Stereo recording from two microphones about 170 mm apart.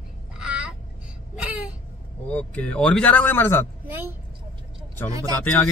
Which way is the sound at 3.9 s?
10° right (ahead or behind).